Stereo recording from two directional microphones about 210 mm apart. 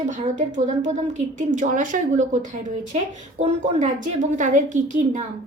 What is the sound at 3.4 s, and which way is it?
A woman's voice, 30° right (ahead or behind).